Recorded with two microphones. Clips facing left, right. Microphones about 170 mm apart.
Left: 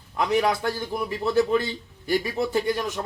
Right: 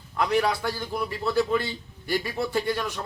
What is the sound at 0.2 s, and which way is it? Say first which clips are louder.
A man's voice: left 1 dB; 20° left (ahead or behind).